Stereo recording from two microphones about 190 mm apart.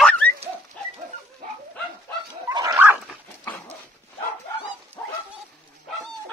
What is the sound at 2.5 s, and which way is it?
Dog, 20° right (ahead or behind).